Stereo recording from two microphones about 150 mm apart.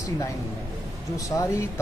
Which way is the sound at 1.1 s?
20° left (ahead or behind).